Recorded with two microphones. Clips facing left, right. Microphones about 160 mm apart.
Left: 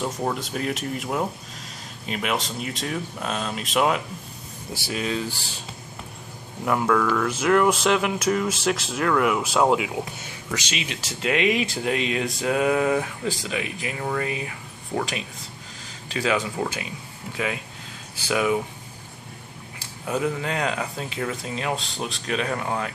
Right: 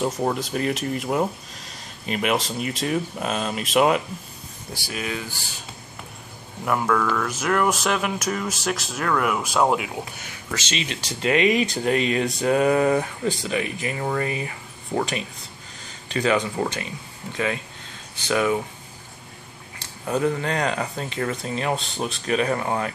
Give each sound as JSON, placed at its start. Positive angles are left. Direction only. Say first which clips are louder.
{"t": 0.0, "sound": "speech", "louder": "right 3 dB", "side_deg": -5}
{"t": 4.8, "sound": "speech", "louder": "left 3 dB", "side_deg": 30}
{"t": 6.7, "sound": "speech", "louder": "left 1 dB", "side_deg": -30}
{"t": 7.2, "sound": "speech", "louder": "left 3 dB", "side_deg": 25}
{"t": 10.6, "sound": "speech", "louder": "right 2 dB", "side_deg": 10}
{"t": 19.8, "sound": "speech", "louder": "right 2 dB", "side_deg": 5}